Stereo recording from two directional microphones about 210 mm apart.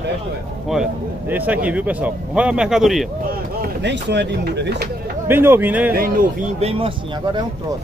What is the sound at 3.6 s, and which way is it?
Speech, 55° right (ahead or behind).